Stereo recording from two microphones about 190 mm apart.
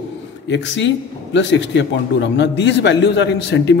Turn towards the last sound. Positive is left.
turn(degrees=65)  # may be behind; listen again after turning